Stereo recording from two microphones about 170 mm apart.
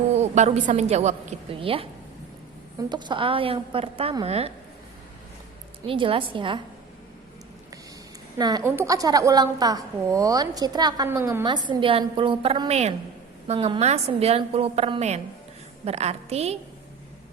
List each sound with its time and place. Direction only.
0.1 s a woman's voice: 40° right (ahead or behind)
5.8 s a woman's voice: 30° right (ahead or behind)
8.4 s a woman's voice: 25° right (ahead or behind)
11.4 s a woman's voice: 25° right (ahead or behind)